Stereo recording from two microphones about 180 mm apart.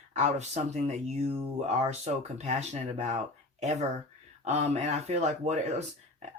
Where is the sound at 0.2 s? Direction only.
40° right (ahead or behind).